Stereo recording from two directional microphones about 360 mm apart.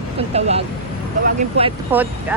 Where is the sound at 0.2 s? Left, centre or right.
Centre.